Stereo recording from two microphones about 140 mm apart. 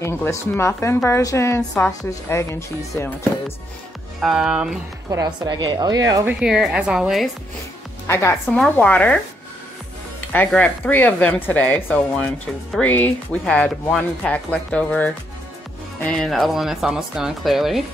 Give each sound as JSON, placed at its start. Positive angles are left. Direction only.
{"t": 0.0, "sound": "a woman's voice", "side_deg": 15}
{"t": 4.2, "sound": "speech", "side_deg": -5}
{"t": 5.1, "sound": "a woman's voice", "side_deg": -25}
{"t": 6.2, "sound": "speech", "side_deg": -5}
{"t": 8.1, "sound": "a woman's voice", "side_deg": 20}
{"t": 10.3, "sound": "speech", "side_deg": 15}